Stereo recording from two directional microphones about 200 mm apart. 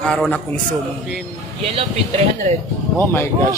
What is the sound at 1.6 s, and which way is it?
Speech, 30° right (ahead or behind).